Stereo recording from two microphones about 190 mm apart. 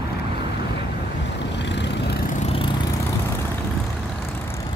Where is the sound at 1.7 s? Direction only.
65° left (ahead or behind).